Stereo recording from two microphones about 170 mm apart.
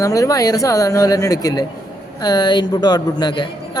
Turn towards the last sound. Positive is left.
turn(degrees=25)  # may be behind; listen again after turning